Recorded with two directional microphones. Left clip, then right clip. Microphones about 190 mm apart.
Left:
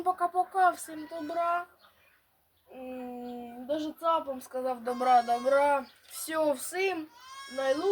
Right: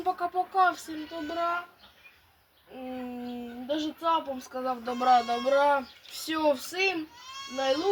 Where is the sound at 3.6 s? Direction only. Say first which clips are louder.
Right 1 dB; 25° left (ahead or behind).